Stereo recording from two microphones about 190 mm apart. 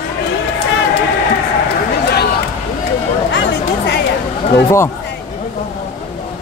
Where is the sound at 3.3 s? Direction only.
70° left (ahead or behind).